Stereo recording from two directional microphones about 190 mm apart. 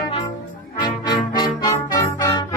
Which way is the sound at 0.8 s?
20° left (ahead or behind).